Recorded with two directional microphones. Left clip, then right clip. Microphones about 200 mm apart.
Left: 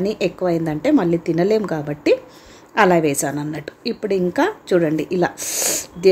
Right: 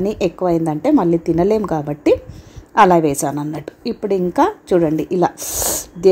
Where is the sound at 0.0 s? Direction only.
20° right (ahead or behind).